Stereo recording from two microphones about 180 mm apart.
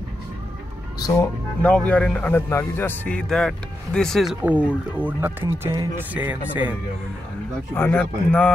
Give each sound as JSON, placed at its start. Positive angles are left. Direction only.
{"t": 0.9, "sound": "speech", "side_deg": 20}
{"t": 7.7, "sound": "speech", "side_deg": 10}